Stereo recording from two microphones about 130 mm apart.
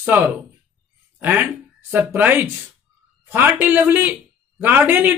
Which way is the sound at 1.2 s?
15° right (ahead or behind).